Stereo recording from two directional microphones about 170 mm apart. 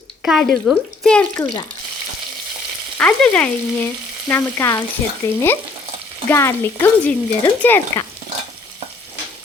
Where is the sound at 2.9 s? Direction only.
10° left (ahead or behind).